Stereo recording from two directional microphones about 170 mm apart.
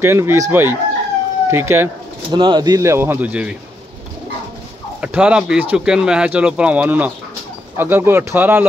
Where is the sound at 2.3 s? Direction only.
25° right (ahead or behind); by 3.5 s 10° right (ahead or behind).